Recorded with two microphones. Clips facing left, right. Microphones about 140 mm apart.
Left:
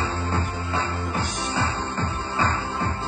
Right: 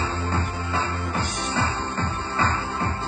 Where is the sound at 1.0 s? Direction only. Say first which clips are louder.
Even; centre (ahead or behind).